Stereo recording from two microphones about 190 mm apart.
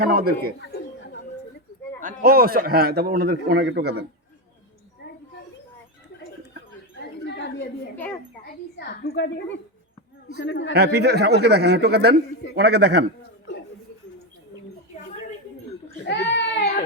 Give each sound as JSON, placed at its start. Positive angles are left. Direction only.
{"t": 0.0, "sound": "a man's voice", "side_deg": -50}
{"t": 2.0, "sound": "a man's voice", "side_deg": -50}
{"t": 3.6, "sound": "a man's voice", "side_deg": -70}
{"t": 7.3, "sound": "a sound", "side_deg": 65}
{"t": 8.4, "sound": "a woman's voice", "side_deg": 50}
{"t": 10.8, "sound": "speech", "side_deg": -60}
{"t": 13.5, "sound": "a sound", "side_deg": 70}
{"t": 16.0, "sound": "baby cry", "side_deg": 65}